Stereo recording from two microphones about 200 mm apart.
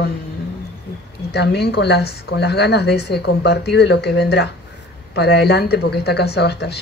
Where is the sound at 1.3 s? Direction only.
55° left (ahead or behind).